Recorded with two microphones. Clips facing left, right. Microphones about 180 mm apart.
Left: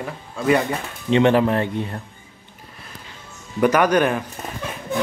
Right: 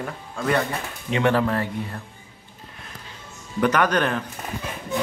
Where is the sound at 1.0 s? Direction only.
25° left (ahead or behind).